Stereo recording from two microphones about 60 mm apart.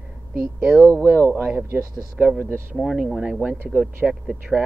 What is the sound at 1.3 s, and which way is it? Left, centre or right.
A man's voice, right.